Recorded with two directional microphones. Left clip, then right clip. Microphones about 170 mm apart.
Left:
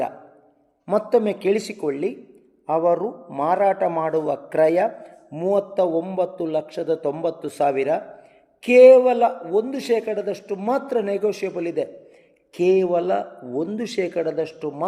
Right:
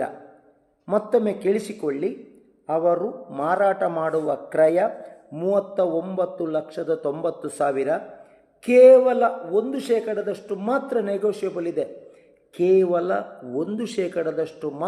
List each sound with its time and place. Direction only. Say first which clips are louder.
0.9 s a man's voice: left 2 dB; 30° left (ahead or behind)